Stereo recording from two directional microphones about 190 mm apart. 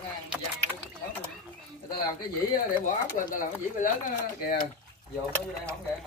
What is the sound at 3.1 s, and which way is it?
Speech, 45° left (ahead or behind).